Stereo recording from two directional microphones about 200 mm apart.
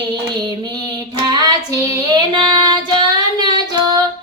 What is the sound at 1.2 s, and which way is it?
Child singing, 20° right (ahead or behind).